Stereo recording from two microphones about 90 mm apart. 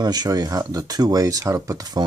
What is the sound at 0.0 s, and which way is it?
Speech, 50° right (ahead or behind).